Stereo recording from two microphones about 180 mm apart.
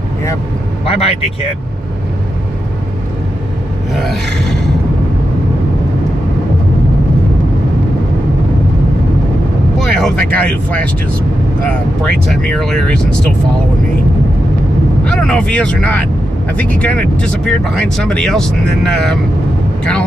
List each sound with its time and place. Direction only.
0.8 s speech: 35° left (ahead or behind)
3.9 s speech: centre (ahead or behind)
9.8 s vehicle: 5° left (ahead or behind)
10.3 s speech: 10° left (ahead or behind)
12.3 s speech: 5° left (ahead or behind)
15.0 s speech: 5° left (ahead or behind)